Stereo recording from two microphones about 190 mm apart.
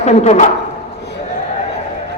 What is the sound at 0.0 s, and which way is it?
Speech, 35° left (ahead or behind).